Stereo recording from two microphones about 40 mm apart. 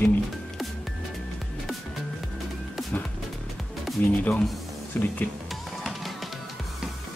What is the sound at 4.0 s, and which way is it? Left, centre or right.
Speech, left.